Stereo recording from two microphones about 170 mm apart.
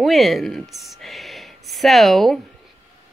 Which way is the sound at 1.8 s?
Centre (ahead or behind).